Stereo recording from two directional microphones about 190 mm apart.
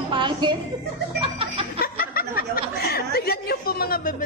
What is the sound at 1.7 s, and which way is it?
Speech, 50° left (ahead or behind).